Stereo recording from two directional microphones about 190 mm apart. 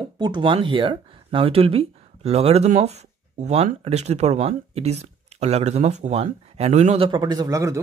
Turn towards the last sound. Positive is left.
turn(degrees=-15)  # may be behind; listen again after turning